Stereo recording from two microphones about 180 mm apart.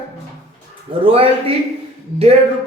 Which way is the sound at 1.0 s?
30° right (ahead or behind).